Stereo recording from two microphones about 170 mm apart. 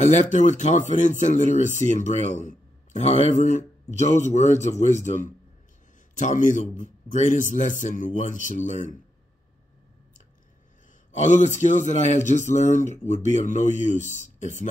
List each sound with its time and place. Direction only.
0.0 s speech: 45° left (ahead or behind)
11.1 s speech: 45° left (ahead or behind)